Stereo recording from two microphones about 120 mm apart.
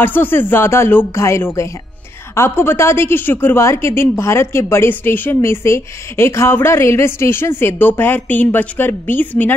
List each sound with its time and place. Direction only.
0.0 s a woman's voice: 15° left (ahead or behind)